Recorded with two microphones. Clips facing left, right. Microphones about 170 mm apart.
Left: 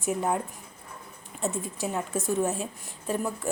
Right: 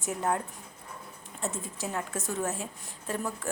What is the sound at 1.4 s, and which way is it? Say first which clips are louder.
Speech: left 5 dB; 15° left (ahead or behind).